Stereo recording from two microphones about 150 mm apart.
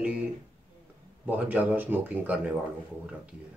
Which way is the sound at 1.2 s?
10° right (ahead or behind).